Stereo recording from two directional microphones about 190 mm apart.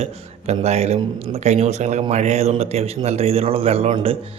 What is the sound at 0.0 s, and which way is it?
Speech, 35° right (ahead or behind).